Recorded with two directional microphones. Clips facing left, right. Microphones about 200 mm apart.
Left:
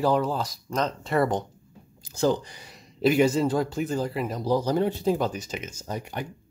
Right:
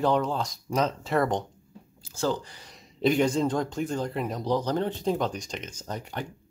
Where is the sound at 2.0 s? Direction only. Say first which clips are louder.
Left 4 dB; 15° left (ahead or behind).